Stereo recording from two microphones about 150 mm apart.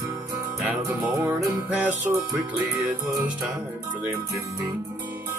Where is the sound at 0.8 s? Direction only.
15° right (ahead or behind).